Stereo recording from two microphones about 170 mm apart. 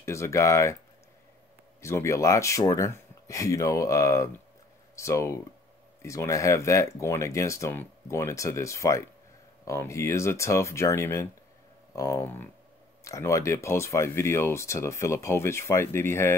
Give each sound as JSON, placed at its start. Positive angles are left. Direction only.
{"t": 0.0, "sound": "speech", "side_deg": 15}
{"t": 1.8, "sound": "speech", "side_deg": 15}